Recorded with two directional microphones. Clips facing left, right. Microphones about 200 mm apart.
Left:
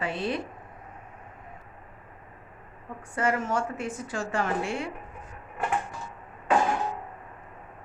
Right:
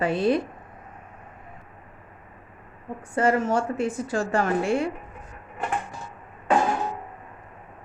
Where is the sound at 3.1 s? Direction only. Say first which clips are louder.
Right 5 dB; 30° right (ahead or behind).